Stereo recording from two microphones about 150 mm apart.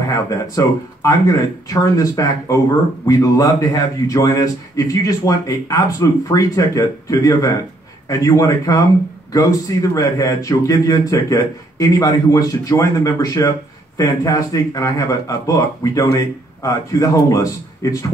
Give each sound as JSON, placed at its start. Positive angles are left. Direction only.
{"t": 0.1, "sound": "a man's voice", "side_deg": 20}